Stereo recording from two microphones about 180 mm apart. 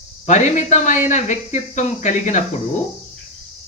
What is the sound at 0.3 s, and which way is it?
Speech, 40° left (ahead or behind).